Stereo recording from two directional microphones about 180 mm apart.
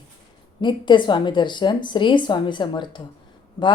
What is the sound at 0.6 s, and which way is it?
A woman's voice, 25° left (ahead or behind).